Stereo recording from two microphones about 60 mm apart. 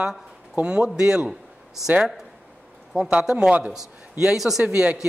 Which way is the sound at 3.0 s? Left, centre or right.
Centre.